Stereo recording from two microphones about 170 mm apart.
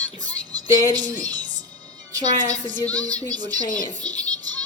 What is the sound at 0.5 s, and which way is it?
A woman's voice, 20° right (ahead or behind).